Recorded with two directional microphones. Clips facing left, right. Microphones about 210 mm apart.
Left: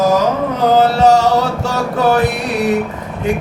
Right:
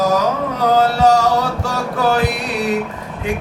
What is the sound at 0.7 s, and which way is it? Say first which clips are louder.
Music: left 3 dB; 25° left (ahead or behind).